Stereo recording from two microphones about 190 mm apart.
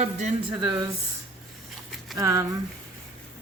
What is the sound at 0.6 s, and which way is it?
Speech, 25° right (ahead or behind).